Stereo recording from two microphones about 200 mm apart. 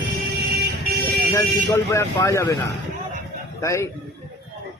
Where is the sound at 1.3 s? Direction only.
15° left (ahead or behind).